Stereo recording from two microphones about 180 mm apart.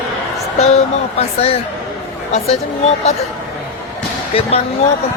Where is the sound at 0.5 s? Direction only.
40° left (ahead or behind).